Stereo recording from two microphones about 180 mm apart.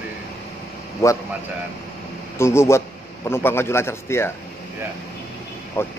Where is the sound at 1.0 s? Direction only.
15° left (ahead or behind).